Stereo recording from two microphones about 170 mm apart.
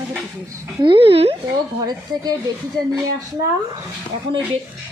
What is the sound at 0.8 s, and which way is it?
Speech, 30° right (ahead or behind).